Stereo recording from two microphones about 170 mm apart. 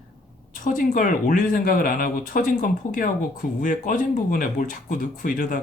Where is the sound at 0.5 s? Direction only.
50° left (ahead or behind).